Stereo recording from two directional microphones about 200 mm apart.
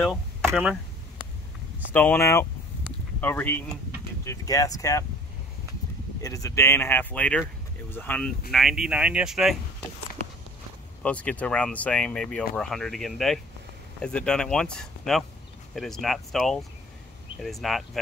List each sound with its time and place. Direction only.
0.0 s a sound: centre (ahead or behind)
1.9 s speech: 10° left (ahead or behind)
6.2 s speech: 15° left (ahead or behind); by 9.6 s centre (ahead or behind)
11.0 s speech: 5° left (ahead or behind)